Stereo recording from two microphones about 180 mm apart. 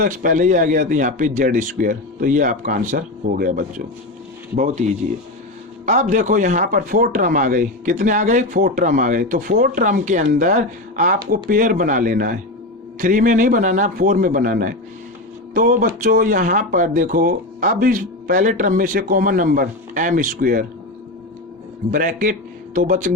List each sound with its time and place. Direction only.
0.0 s a man's voice: 45° right (ahead or behind)
4.5 s a man's voice: 40° right (ahead or behind)
21.9 s speech: 45° right (ahead or behind)